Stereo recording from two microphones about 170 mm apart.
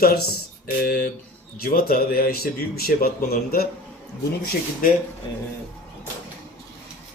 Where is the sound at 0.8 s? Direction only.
60° left (ahead or behind).